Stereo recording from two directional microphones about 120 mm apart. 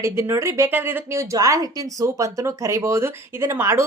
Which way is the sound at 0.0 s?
20° right (ahead or behind).